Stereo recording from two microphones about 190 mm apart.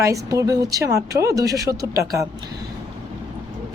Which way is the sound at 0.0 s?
15° right (ahead or behind).